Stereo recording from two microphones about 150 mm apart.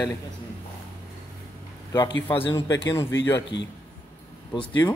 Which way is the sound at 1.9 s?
15° left (ahead or behind).